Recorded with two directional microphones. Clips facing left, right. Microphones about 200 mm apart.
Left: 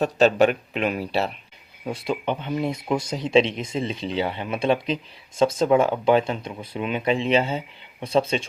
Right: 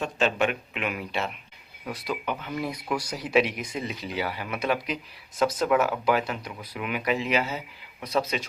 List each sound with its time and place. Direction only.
0.0 s speech: 35° left (ahead or behind)